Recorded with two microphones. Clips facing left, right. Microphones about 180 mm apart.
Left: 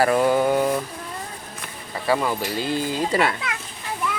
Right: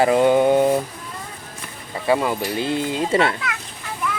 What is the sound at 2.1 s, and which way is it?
Speech, 20° right (ahead or behind).